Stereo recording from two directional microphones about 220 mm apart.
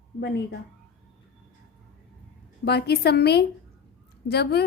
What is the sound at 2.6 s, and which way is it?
A woman's voice, 45° left (ahead or behind).